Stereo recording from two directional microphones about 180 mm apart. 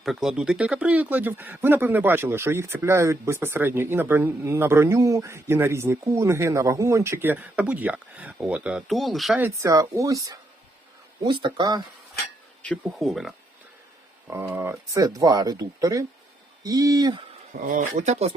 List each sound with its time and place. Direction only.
0.0 s speech: centre (ahead or behind)
9.4 s speech: 15° right (ahead or behind)
12.6 s speech: 5° left (ahead or behind)
14.3 s speech: 15° right (ahead or behind)
17.5 s speech: 45° right (ahead or behind)